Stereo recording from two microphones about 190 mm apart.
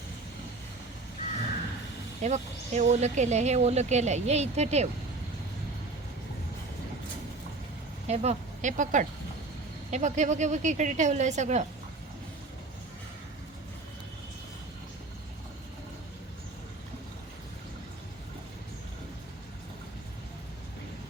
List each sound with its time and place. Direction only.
2.2 s speech: 40° right (ahead or behind)
8.0 s speech: 35° right (ahead or behind)